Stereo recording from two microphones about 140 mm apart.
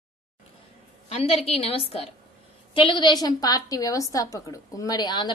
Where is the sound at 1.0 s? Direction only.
45° left (ahead or behind).